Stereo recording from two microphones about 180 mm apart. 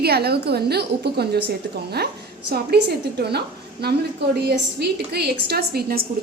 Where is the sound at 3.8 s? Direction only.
65° right (ahead or behind).